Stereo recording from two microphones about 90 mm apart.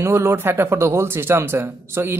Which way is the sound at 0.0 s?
30° right (ahead or behind).